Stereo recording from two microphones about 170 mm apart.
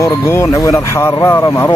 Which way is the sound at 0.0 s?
15° left (ahead or behind).